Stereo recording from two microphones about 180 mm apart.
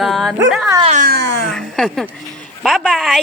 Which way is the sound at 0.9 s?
45° right (ahead or behind).